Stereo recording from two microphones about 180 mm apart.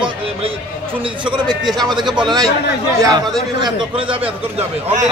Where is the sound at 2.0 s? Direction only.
Centre (ahead or behind).